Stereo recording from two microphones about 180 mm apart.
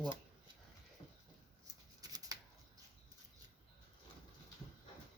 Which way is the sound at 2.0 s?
20° right (ahead or behind).